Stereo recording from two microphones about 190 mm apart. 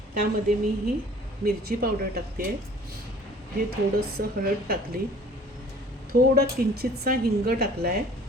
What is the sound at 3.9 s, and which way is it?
A woman's voice, 55° right (ahead or behind).